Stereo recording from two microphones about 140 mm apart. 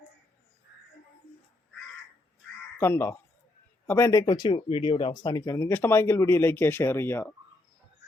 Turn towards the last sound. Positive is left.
turn(degrees=15)  # may be behind; listen again after turning